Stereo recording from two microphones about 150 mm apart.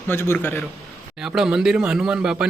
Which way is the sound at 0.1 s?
15° left (ahead or behind).